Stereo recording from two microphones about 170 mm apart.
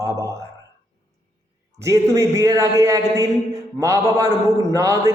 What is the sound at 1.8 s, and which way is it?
Speech, 20° right (ahead or behind).